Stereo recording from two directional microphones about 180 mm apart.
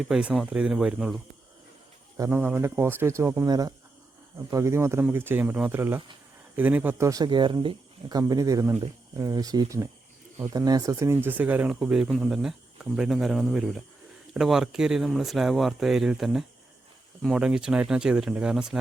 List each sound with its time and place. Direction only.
0.1 s speech: 5° right (ahead or behind)
2.1 s speech: 15° right (ahead or behind)